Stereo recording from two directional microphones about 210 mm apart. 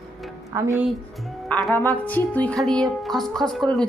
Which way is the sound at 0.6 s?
15° right (ahead or behind).